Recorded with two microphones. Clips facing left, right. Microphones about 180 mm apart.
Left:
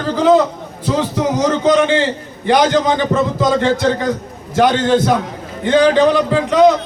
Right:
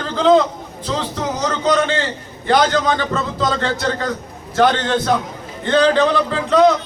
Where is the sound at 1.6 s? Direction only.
15° left (ahead or behind).